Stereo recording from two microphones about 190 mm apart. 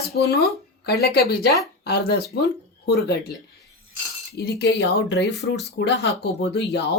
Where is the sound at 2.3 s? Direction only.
55° left (ahead or behind).